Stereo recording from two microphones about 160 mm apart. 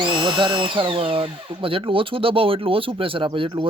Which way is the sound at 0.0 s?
30° right (ahead or behind).